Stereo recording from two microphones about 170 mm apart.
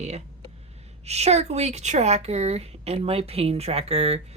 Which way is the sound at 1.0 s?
40° right (ahead or behind).